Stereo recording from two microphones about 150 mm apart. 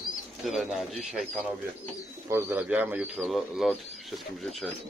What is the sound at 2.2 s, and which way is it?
Speech, 20° right (ahead or behind).